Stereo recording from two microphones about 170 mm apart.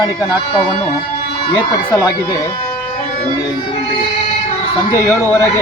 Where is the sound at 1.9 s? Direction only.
20° left (ahead or behind).